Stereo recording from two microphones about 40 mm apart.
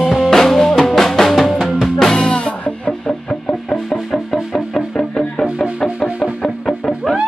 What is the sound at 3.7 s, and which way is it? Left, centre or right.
Music, centre.